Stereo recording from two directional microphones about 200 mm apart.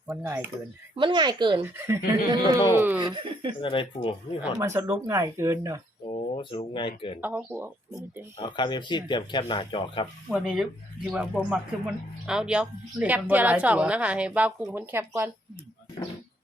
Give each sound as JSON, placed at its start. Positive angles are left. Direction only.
{"t": 0.1, "sound": "a woman's voice", "side_deg": -10}
{"t": 0.9, "sound": "a woman's voice", "side_deg": -25}
{"t": 3.6, "sound": "speech", "side_deg": 25}
{"t": 4.5, "sound": "a woman's voice", "side_deg": -15}
{"t": 6.1, "sound": "speech", "side_deg": 25}
{"t": 7.2, "sound": "a woman's voice", "side_deg": -10}
{"t": 8.4, "sound": "speech", "side_deg": 25}
{"t": 10.2, "sound": "a woman's voice", "side_deg": -5}